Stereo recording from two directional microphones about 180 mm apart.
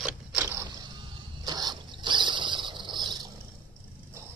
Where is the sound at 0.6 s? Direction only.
25° right (ahead or behind).